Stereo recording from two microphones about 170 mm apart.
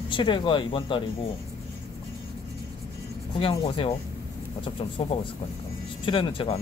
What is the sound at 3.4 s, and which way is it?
Speech, 35° left (ahead or behind).